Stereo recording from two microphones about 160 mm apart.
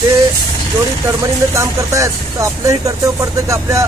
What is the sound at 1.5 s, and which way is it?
Speech, 20° right (ahead or behind).